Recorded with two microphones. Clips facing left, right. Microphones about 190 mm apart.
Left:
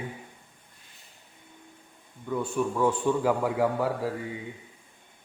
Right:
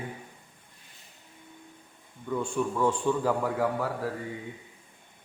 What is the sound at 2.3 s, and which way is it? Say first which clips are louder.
A man's voice: left 1 dB; 5° left (ahead or behind).